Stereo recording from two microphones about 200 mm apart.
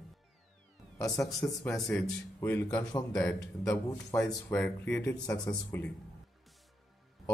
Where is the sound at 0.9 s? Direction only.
15° left (ahead or behind).